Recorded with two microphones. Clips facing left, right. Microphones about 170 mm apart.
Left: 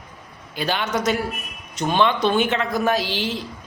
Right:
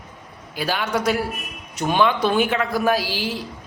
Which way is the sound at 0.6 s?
5° right (ahead or behind).